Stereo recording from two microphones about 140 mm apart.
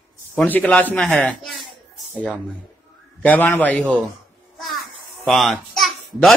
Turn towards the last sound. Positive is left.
turn(degrees=0)  # may be behind; listen again after turning